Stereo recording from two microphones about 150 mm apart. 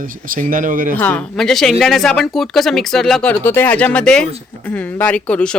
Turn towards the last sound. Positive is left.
turn(degrees=5)  # may be behind; listen again after turning